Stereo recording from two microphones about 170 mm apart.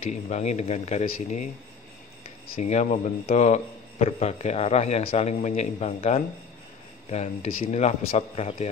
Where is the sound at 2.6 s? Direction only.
40° left (ahead or behind).